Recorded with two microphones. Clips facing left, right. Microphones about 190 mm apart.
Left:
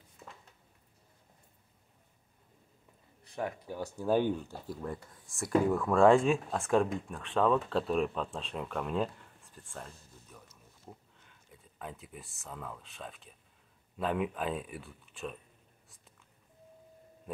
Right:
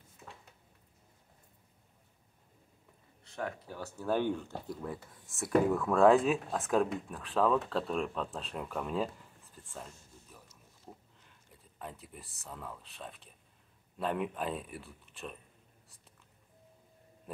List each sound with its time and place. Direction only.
3.3 s speech: 15° left (ahead or behind)
4.6 s speech: centre (ahead or behind)
9.7 s a sound: centre (ahead or behind)
11.1 s speech: centre (ahead or behind)